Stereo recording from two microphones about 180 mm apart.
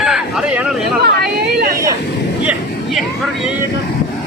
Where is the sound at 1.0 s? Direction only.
65° right (ahead or behind).